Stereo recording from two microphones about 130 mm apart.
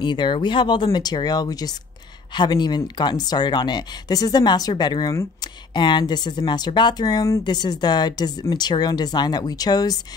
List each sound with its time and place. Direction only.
0.0 s speech: 35° left (ahead or behind)